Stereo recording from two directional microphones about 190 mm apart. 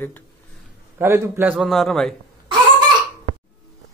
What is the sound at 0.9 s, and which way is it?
A man's voice, 15° right (ahead or behind).